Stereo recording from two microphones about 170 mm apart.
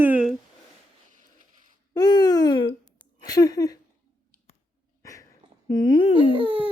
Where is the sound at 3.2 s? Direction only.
20° left (ahead or behind).